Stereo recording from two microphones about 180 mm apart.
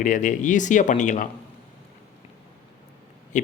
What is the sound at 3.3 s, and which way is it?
Speech, 45° left (ahead or behind).